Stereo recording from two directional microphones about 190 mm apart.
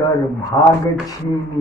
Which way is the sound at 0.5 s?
15° left (ahead or behind).